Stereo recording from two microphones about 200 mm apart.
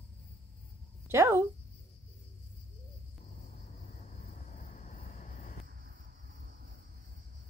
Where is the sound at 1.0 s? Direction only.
10° right (ahead or behind).